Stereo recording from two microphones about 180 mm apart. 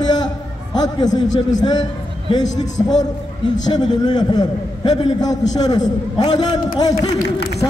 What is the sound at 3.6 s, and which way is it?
Speech, 20° left (ahead or behind).